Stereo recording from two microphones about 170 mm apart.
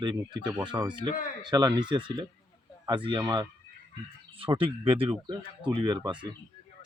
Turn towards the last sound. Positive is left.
turn(degrees=-25)  # may be behind; listen again after turning